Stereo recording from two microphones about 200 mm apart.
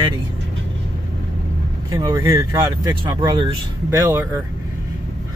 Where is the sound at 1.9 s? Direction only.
15° right (ahead or behind).